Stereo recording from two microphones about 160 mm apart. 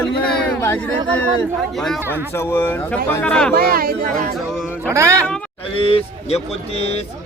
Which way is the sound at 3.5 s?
70° right (ahead or behind).